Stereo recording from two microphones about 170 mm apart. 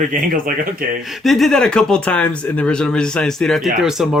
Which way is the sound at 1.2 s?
Centre (ahead or behind).